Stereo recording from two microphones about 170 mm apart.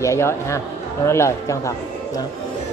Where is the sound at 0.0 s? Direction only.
15° left (ahead or behind).